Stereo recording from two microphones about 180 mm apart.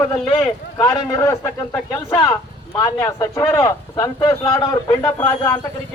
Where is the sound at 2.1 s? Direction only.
25° left (ahead or behind).